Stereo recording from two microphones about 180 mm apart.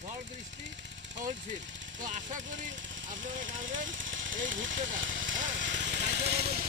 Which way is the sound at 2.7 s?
90° right.